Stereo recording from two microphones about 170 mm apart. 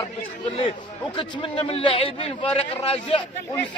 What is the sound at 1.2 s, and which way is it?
Speech, 30° left (ahead or behind).